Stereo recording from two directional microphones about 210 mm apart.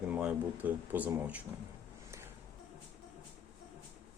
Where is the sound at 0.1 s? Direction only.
5° right (ahead or behind).